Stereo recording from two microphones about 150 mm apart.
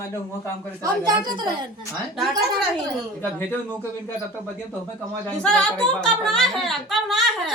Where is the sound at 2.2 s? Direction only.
Centre (ahead or behind).